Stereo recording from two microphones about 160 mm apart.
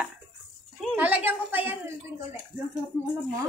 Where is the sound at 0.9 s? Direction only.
10° right (ahead or behind).